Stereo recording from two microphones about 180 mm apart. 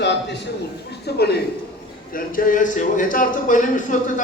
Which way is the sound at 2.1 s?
50° left (ahead or behind).